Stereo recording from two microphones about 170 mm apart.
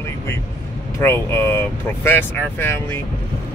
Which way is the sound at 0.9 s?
15° left (ahead or behind).